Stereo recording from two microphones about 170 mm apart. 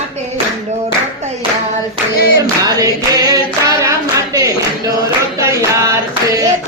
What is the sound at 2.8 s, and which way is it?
Clapping, 20° right (ahead or behind).